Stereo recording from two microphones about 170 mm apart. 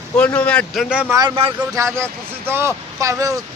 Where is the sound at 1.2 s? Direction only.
30° right (ahead or behind).